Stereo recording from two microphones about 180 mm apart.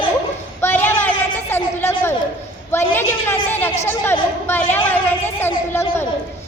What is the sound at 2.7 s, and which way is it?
A man's voice, 15° left (ahead or behind).